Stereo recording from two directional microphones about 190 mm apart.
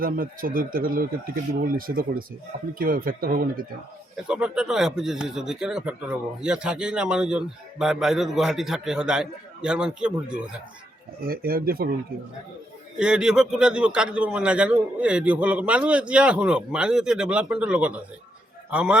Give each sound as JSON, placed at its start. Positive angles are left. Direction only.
{"t": 0.0, "sound": "speech", "side_deg": -50}
{"t": 4.3, "sound": "speech", "side_deg": -5}
{"t": 11.3, "sound": "speech", "side_deg": -50}
{"t": 13.0, "sound": "speech", "side_deg": -5}